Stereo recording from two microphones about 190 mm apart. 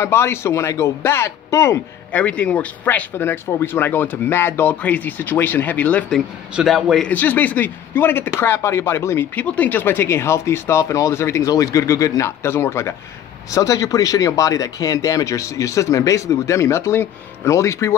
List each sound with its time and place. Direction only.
0.0 s speech: 15° left (ahead or behind)